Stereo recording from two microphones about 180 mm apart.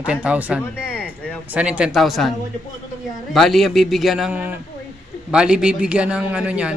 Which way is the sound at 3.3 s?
Centre (ahead or behind).